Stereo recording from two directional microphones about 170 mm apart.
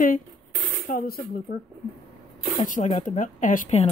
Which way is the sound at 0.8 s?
60° left (ahead or behind).